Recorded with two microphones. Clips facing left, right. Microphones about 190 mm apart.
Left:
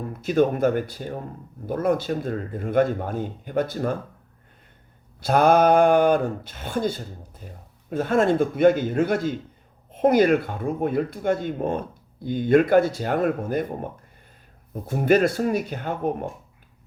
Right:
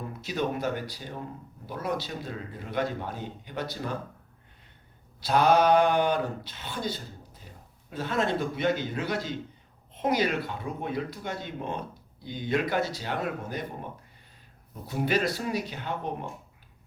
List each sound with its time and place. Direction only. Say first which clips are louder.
0.2 s speech: left 11 dB; 50° left (ahead or behind)
5.2 s speech: left 5 dB; 50° left (ahead or behind)
14.7 s speech: left 8 dB; 50° left (ahead or behind)